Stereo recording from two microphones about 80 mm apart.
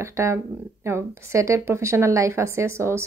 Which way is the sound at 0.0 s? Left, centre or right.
Right.